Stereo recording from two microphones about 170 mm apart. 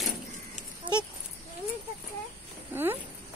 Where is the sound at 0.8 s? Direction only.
30° right (ahead or behind).